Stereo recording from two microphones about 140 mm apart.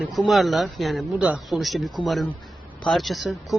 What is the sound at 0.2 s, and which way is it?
A man's voice, centre (ahead or behind).